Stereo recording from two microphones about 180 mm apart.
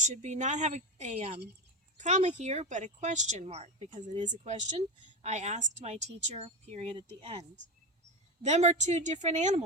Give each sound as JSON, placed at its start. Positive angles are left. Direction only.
{"t": 0.0, "sound": "speech", "side_deg": -40}